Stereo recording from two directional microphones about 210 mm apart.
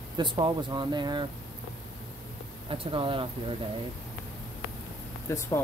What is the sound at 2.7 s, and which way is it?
Speech, 25° right (ahead or behind).